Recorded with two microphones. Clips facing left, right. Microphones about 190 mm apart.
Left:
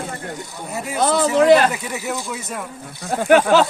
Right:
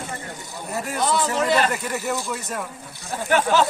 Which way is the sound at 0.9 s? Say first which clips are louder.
Left 5 dB; 60° left (ahead or behind).